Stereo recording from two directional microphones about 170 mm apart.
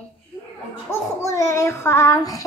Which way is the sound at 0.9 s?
15° left (ahead or behind).